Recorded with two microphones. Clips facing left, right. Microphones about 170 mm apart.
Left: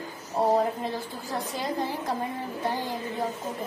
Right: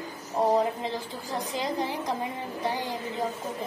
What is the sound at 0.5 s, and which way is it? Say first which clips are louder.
A woman's voice: even; 15° right (ahead or behind).